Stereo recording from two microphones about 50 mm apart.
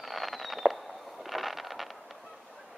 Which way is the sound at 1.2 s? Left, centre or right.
Centre.